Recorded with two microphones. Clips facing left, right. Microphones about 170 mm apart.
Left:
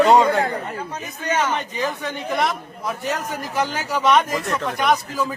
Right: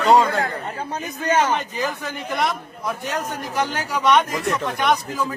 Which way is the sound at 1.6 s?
Centre (ahead or behind).